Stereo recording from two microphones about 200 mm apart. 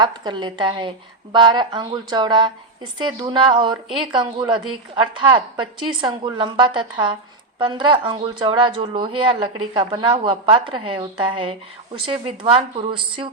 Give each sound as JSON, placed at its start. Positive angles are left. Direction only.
{"t": 0.0, "sound": "speech", "side_deg": -20}